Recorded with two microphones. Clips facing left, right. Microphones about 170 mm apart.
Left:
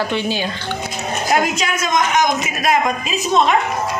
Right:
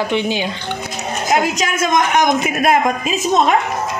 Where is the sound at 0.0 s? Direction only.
20° right (ahead or behind).